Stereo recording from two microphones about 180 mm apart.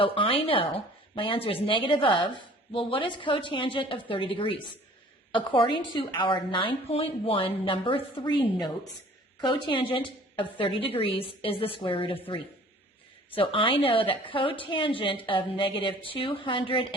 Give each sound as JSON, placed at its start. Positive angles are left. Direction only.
{"t": 0.0, "sound": "a woman's voice", "side_deg": 30}